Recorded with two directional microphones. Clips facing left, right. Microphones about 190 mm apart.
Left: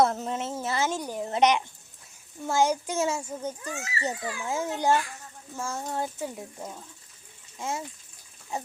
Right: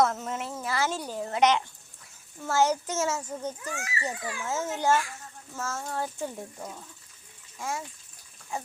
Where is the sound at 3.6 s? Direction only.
25° left (ahead or behind).